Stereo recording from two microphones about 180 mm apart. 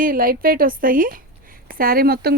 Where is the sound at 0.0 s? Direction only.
50° right (ahead or behind).